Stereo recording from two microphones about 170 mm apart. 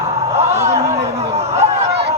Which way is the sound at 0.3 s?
40° right (ahead or behind).